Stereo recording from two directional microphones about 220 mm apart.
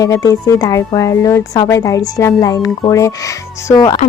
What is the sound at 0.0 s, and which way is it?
Speech, 15° left (ahead or behind).